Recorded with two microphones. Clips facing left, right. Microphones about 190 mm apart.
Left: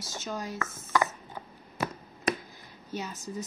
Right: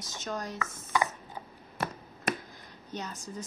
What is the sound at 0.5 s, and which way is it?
Speech, 15° right (ahead or behind).